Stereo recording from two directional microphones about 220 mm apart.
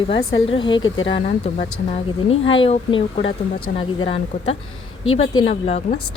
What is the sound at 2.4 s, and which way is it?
Speech, 60° left (ahead or behind).